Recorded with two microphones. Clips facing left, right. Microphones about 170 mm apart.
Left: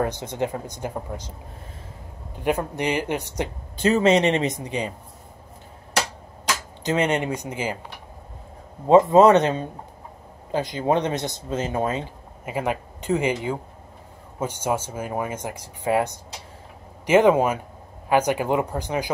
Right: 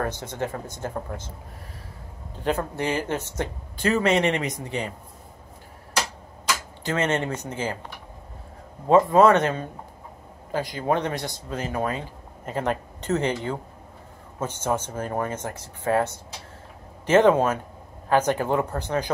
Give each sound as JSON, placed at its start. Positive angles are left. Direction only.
{"t": 0.0, "sound": "speech", "side_deg": 15}
{"t": 2.4, "sound": "speech", "side_deg": 15}
{"t": 6.8, "sound": "speech", "side_deg": 15}
{"t": 8.8, "sound": "speech", "side_deg": 20}
{"t": 12.4, "sound": "speech", "side_deg": 10}